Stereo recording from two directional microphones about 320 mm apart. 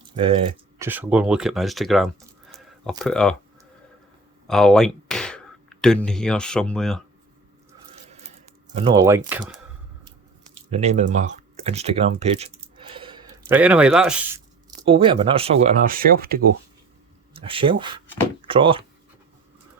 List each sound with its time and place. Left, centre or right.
0.8 s speech: centre
4.4 s speech: centre
8.7 s speech: centre
10.7 s speech: centre
17.3 s speech: centre